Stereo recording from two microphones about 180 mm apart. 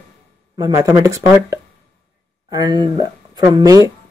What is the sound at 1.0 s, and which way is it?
Speech, 15° right (ahead or behind).